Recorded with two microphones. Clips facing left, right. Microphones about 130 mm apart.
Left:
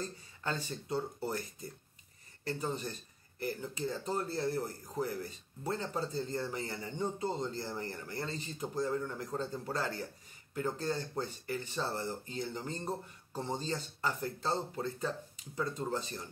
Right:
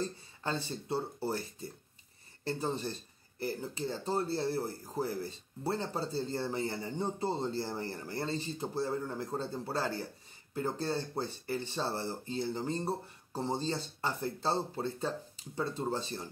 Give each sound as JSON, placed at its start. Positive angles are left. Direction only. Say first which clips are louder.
{"t": 0.0, "sound": "speech", "louder": "right 3 dB", "side_deg": -30}